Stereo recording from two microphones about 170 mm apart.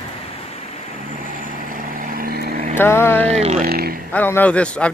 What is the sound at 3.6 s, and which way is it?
Speech, 60° right (ahead or behind).